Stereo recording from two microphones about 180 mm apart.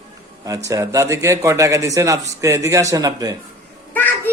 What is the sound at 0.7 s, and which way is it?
A man's voice, 20° right (ahead or behind).